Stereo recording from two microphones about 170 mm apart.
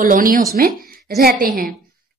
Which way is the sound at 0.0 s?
55° right (ahead or behind).